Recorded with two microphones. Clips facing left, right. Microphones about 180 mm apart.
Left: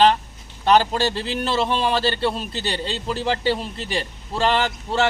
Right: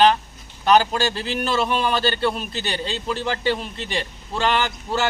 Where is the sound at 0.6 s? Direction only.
30° left (ahead or behind).